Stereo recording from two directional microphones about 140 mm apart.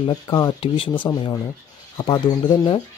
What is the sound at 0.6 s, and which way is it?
Speech, 40° left (ahead or behind).